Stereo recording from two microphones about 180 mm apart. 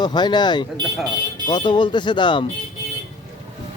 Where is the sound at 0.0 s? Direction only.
25° left (ahead or behind).